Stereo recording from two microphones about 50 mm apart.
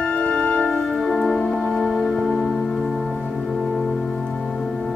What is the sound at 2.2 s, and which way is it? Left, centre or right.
Music, centre.